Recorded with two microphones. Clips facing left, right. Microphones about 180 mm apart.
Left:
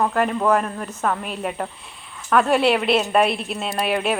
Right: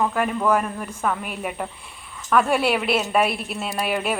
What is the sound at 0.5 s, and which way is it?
Speech, 5° right (ahead or behind).